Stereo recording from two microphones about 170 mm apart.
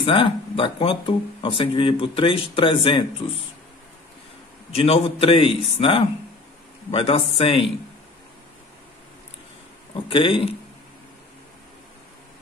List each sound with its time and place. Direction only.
0.0 s speech: 30° left (ahead or behind)
4.7 s speech: 35° left (ahead or behind)
10.0 s speech: 30° left (ahead or behind)